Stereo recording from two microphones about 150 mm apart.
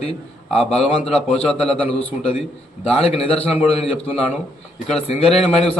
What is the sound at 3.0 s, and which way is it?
Speech, 40° left (ahead or behind).